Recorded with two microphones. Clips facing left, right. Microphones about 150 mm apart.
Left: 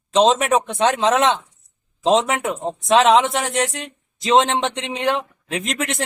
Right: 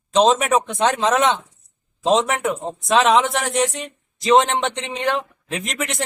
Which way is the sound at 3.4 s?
Centre (ahead or behind).